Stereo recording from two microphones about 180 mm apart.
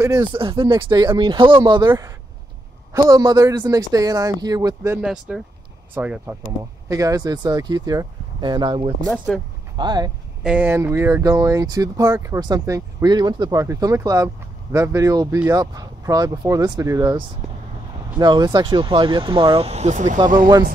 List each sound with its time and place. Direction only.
0.0 s speech: 20° right (ahead or behind)
5.0 s speech: 5° right (ahead or behind)
6.9 s speech: 20° right (ahead or behind)
9.0 s speech: 5° left (ahead or behind)
9.8 s speech: 25° right (ahead or behind)
10.4 s speech: 10° right (ahead or behind)
18.2 s speech: 20° right (ahead or behind); by 20.2 s 40° right (ahead or behind)